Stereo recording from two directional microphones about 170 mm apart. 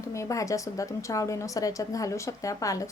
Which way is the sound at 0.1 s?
20° left (ahead or behind).